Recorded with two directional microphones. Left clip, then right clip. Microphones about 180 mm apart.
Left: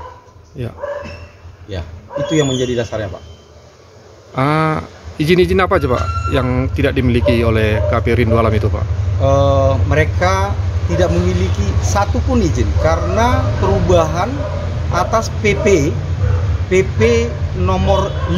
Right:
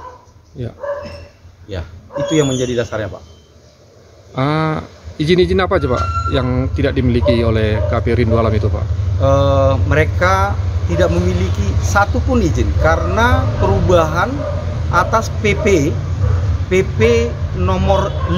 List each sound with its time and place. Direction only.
0.6 s speech: 5° right (ahead or behind)
4.4 s a man's voice: centre (ahead or behind)